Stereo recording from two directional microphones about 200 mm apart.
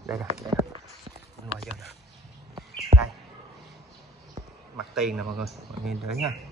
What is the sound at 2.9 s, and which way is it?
Bird, 40° right (ahead or behind).